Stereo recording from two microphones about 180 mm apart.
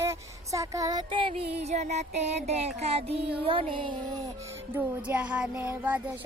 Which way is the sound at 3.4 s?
30° right (ahead or behind).